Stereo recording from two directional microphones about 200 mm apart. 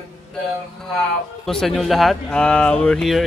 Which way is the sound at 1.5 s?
Centre (ahead or behind).